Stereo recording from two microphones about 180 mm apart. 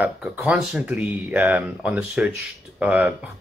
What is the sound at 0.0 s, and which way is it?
Speech, 5° right (ahead or behind).